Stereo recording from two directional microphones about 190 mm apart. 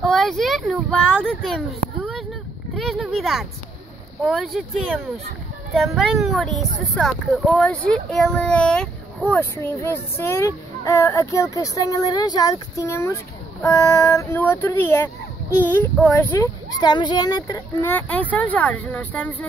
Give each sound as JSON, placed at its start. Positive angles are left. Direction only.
{"t": 0.0, "sound": "speech", "side_deg": 0}
{"t": 17.9, "sound": "speech", "side_deg": 10}